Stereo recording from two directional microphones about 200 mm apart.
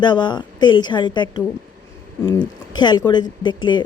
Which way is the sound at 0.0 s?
20° left (ahead or behind).